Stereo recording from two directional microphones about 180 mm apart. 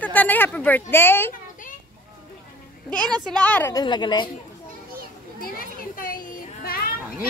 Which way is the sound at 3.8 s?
25° left (ahead or behind).